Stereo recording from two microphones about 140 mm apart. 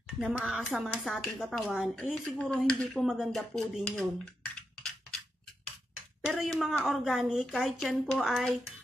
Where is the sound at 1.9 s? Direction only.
5° left (ahead or behind).